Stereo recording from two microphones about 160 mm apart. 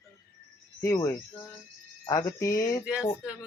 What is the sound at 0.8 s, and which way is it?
Speech, 20° left (ahead or behind).